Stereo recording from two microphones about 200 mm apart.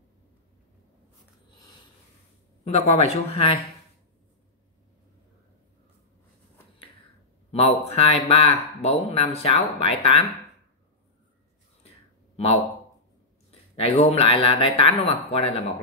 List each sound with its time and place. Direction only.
2.6 s speech: 30° left (ahead or behind)
7.5 s speech: 30° left (ahead or behind)
13.5 s speech: 30° left (ahead or behind)